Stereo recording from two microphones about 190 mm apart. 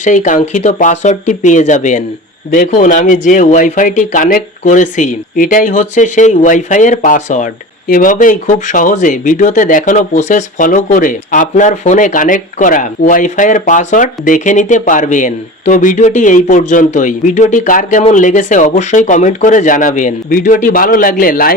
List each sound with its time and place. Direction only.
0.0 s speech: 40° left (ahead or behind)